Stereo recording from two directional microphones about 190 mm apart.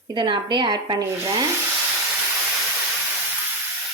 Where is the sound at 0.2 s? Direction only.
25° right (ahead or behind).